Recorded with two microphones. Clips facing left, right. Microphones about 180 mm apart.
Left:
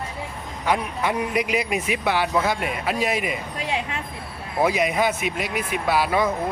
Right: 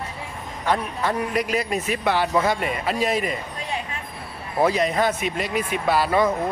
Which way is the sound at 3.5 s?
85° left.